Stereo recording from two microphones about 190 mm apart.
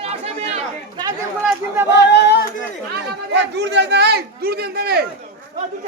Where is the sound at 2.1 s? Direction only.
60° left (ahead or behind).